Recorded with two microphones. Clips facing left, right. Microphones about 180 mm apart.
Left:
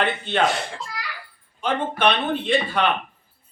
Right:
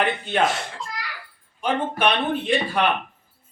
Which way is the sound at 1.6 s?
10° right (ahead or behind).